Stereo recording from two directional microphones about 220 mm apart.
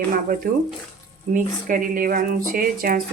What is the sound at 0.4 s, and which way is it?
Speech, 40° right (ahead or behind).